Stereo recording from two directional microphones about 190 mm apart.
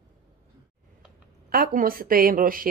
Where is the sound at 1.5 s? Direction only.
50° right (ahead or behind).